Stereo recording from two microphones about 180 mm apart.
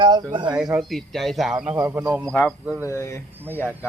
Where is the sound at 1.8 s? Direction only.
15° right (ahead or behind).